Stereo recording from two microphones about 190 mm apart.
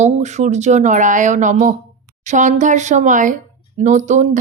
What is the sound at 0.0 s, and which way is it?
Speech, 35° right (ahead or behind).